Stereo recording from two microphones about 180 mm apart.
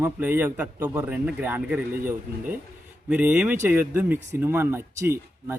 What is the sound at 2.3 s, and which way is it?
Speech, 60° right (ahead or behind).